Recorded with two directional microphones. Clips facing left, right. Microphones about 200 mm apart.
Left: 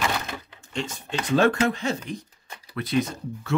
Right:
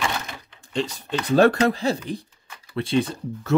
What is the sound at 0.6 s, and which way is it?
Typing, 35° right (ahead or behind).